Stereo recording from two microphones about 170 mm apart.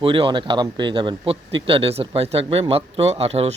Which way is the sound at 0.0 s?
30° right (ahead or behind).